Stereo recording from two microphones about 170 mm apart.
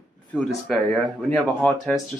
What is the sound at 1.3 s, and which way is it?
Speech, 5° left (ahead or behind).